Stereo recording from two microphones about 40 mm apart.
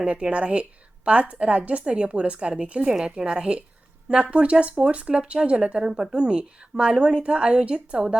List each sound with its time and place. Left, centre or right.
0.0 s a woman's voice: right